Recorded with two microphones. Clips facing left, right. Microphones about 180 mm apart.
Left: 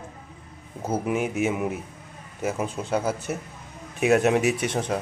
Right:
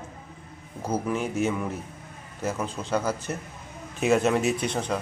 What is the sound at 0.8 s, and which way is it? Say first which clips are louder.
Speech: left 2 dB; 15° left (ahead or behind).